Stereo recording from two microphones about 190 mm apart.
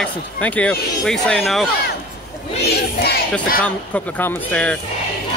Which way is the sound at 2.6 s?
60° left (ahead or behind).